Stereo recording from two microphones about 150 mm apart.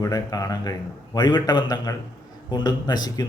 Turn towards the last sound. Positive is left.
turn(degrees=25)  # may be behind; listen again after turning